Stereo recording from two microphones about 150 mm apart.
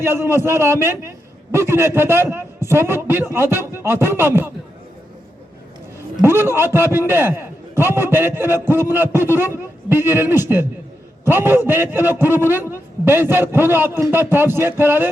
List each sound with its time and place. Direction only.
0.0 s a man's voice: 15° right (ahead or behind)
6.2 s a man's voice: 15° right (ahead or behind)